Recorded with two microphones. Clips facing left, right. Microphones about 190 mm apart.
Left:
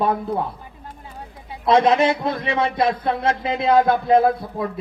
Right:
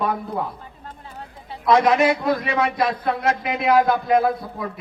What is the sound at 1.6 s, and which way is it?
A man's voice, 25° left (ahead or behind).